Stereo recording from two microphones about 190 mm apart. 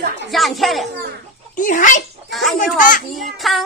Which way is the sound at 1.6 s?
45° left (ahead or behind).